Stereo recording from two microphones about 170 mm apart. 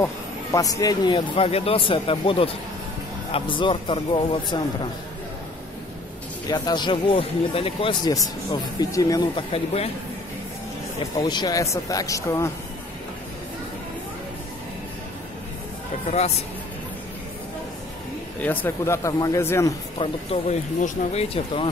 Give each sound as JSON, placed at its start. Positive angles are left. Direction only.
{"t": 0.0, "sound": "speech", "side_deg": 20}
{"t": 6.5, "sound": "speech", "side_deg": 25}
{"t": 11.1, "sound": "speech", "side_deg": 25}
{"t": 18.4, "sound": "speech", "side_deg": 10}
{"t": 20.0, "sound": "speech", "side_deg": 40}